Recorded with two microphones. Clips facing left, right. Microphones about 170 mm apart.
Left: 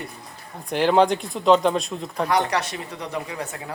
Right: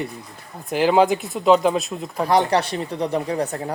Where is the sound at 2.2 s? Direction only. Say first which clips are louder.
Right 5 dB; 30° right (ahead or behind).